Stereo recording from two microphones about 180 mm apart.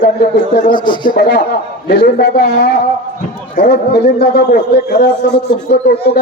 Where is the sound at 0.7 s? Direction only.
25° left (ahead or behind).